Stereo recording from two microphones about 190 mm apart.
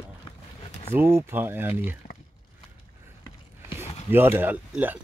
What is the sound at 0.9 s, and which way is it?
Speech, 10° right (ahead or behind).